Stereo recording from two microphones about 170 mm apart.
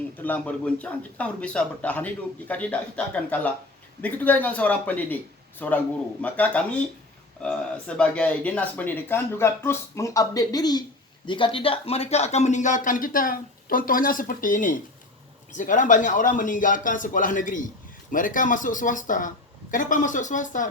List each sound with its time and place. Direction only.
0.2 s speech: 10° left (ahead or behind); by 20.7 s 50° left (ahead or behind)